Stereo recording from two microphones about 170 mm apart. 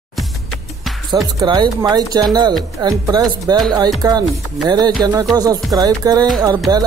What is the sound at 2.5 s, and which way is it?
Speech, centre (ahead or behind).